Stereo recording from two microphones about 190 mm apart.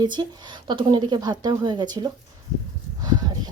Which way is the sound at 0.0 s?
20° right (ahead or behind).